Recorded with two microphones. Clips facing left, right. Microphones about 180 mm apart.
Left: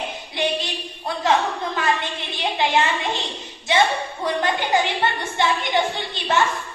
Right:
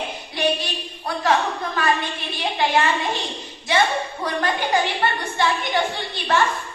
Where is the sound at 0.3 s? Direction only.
25° left (ahead or behind).